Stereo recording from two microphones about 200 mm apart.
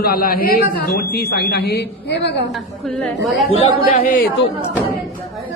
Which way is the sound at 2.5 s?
Centre (ahead or behind).